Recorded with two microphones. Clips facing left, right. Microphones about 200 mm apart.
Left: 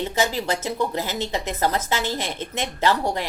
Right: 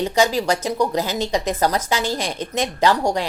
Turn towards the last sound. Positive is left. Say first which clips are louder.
# right 4 dB
turn(degrees=-15)  # may be behind; listen again after turning